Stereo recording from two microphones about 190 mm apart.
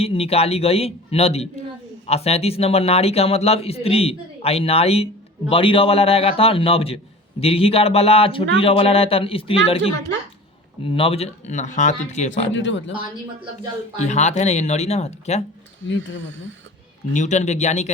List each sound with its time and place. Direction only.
0.0 s a man's voice: 30° left (ahead or behind)
12.5 s speech: 75° left (ahead or behind)
14.0 s a man's voice: 35° left (ahead or behind)
17.1 s a man's voice: 40° left (ahead or behind)